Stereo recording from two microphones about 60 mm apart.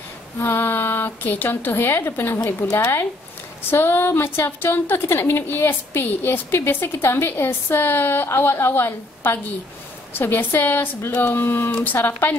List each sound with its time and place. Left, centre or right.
0.4 s a woman's voice: left